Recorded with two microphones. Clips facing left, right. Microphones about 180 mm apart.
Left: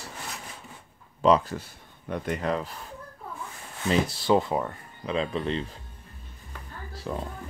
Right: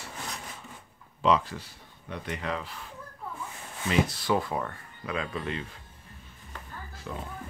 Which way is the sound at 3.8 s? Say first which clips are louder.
Left 3 dB; 30° left (ahead or behind).